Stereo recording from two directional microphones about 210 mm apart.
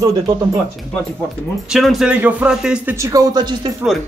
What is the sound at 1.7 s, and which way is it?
A man's voice, centre (ahead or behind).